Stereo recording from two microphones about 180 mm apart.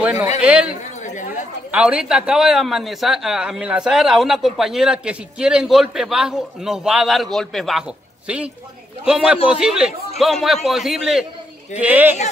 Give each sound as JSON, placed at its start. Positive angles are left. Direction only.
{"t": 0.0, "sound": "a man's voice", "side_deg": -10}
{"t": 0.4, "sound": "a sound", "side_deg": -5}
{"t": 1.0, "sound": "chatter", "side_deg": 45}
{"t": 1.7, "sound": "speech", "side_deg": -5}